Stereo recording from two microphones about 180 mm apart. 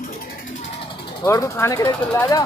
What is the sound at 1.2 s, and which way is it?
Speech, 15° left (ahead or behind).